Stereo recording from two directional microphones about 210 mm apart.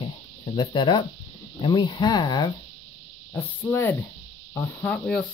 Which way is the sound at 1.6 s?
20° left (ahead or behind).